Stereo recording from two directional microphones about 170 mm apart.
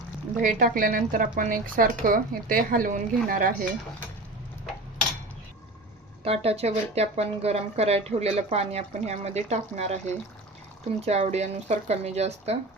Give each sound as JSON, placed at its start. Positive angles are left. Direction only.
{"t": 0.3, "sound": "speech", "side_deg": -50}
{"t": 6.2, "sound": "speech", "side_deg": -35}